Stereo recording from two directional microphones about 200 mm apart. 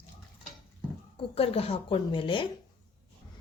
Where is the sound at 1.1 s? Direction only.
30° left (ahead or behind).